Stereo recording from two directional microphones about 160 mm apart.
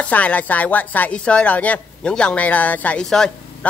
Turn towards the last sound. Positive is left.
turn(degrees=5)  # may be behind; listen again after turning